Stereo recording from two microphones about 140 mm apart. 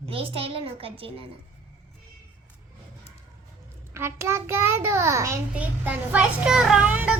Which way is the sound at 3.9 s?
20° right (ahead or behind).